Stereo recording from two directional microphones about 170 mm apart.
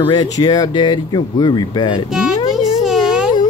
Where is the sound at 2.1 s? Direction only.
5° right (ahead or behind).